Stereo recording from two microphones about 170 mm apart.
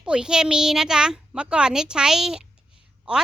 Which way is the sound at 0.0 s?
5° right (ahead or behind).